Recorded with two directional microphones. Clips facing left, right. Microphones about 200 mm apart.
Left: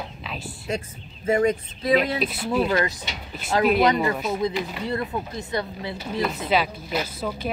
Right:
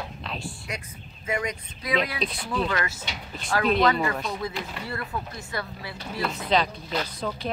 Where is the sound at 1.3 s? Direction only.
35° left (ahead or behind).